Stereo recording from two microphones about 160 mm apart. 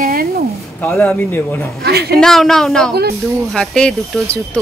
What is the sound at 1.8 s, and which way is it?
Speech, 80° right.